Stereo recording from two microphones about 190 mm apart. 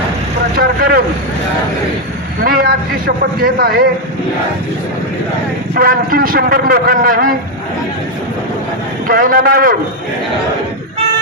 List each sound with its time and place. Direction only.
0.5 s vehicle: 50° right (ahead or behind)
2.4 s a sound: 50° right (ahead or behind)
3.4 s a man's voice: 55° right (ahead or behind)
5.7 s a man's voice: 50° right (ahead or behind)
9.0 s a man's voice: 50° right (ahead or behind)